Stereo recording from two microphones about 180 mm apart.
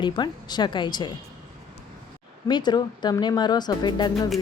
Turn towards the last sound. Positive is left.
turn(degrees=25)  # may be behind; listen again after turning